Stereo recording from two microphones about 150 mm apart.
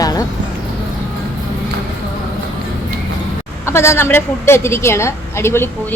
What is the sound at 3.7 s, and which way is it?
A woman's voice, 15° left (ahead or behind).